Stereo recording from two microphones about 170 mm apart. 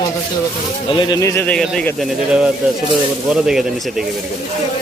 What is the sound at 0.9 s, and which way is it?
Speech, 20° left (ahead or behind).